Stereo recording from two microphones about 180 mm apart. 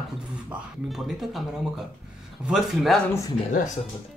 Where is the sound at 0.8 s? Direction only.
Centre (ahead or behind).